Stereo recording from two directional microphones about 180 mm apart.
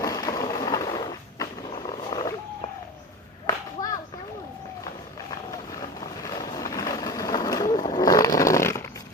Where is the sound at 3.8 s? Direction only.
45° left (ahead or behind).